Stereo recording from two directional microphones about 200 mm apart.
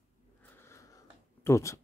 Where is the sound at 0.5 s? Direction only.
15° left (ahead or behind).